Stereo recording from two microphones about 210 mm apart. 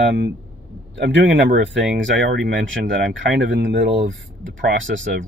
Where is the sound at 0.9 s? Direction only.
55° right (ahead or behind).